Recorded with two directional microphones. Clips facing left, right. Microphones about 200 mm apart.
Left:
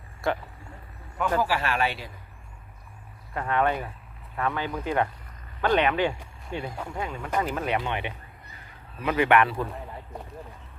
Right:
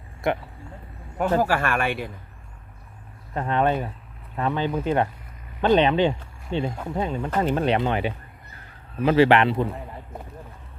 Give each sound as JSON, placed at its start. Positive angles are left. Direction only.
{"t": 0.2, "sound": "speech", "side_deg": -20}
{"t": 1.4, "sound": "speech", "side_deg": -50}
{"t": 3.3, "sound": "speech", "side_deg": -25}